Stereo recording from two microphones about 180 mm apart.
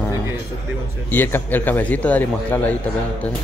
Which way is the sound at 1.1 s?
10° left (ahead or behind).